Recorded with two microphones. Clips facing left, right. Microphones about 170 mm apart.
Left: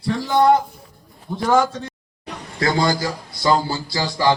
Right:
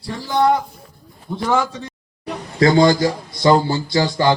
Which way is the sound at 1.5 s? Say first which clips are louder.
Left 2 dB; 45° left (ahead or behind).